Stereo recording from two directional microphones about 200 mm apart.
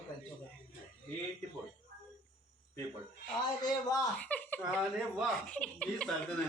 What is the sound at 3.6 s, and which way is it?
Speech, 20° left (ahead or behind).